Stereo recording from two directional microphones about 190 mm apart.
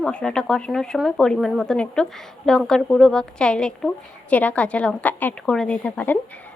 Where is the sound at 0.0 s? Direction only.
5° left (ahead or behind).